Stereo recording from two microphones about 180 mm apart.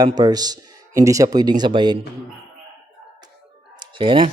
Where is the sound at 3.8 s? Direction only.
30° right (ahead or behind).